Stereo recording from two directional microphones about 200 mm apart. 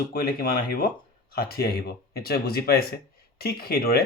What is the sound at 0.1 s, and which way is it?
Speech, 50° left (ahead or behind).